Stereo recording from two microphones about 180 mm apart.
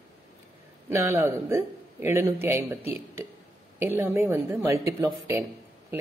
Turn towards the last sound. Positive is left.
turn(degrees=-15)  # may be behind; listen again after turning